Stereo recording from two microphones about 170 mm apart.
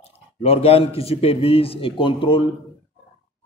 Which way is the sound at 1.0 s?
35° left (ahead or behind).